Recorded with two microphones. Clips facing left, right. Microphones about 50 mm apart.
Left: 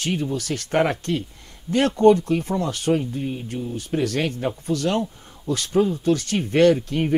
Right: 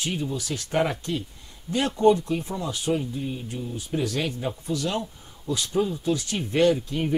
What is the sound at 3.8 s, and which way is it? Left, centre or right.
Speech, left.